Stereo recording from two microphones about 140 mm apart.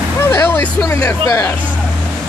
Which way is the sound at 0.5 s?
15° left (ahead or behind).